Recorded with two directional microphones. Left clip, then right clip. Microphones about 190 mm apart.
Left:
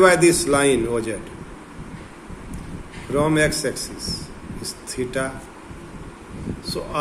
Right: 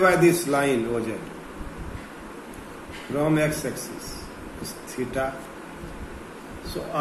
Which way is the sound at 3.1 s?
50° left (ahead or behind).